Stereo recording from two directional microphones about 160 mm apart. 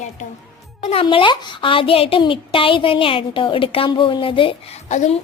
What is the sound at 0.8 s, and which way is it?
Speech, 35° left (ahead or behind).